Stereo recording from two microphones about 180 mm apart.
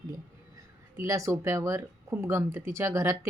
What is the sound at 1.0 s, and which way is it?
Speech, 15° right (ahead or behind).